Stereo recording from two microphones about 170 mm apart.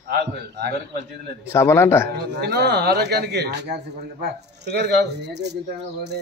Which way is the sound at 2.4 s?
75° right (ahead or behind).